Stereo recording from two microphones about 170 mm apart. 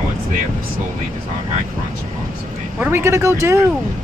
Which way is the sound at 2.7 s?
10° right (ahead or behind).